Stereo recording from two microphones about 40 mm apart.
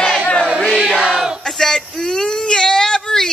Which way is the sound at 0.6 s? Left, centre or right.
Centre.